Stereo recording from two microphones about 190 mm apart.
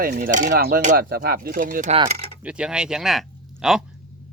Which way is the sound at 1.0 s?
55° right (ahead or behind).